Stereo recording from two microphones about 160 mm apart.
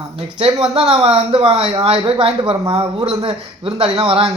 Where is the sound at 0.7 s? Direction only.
45° right (ahead or behind).